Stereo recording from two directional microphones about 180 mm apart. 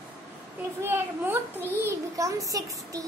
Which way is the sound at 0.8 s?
15° right (ahead or behind).